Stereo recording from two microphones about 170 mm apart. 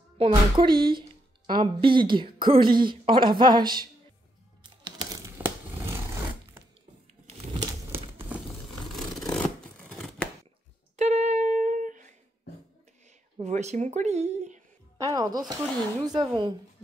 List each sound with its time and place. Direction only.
0.2 s speech: 30° right (ahead or behind)
4.6 s crumpling: 25° right (ahead or behind)
8.9 s scissors: centre (ahead or behind)
11.0 s a sound: 40° right (ahead or behind)
13.4 s speech: 40° right (ahead or behind)
15.0 s speech: 20° right (ahead or behind)